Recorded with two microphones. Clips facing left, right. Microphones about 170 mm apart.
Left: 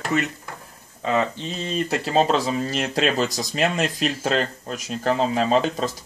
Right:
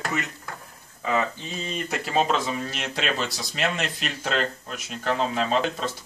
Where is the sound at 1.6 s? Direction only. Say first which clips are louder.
Left 6 dB; 30° left (ahead or behind).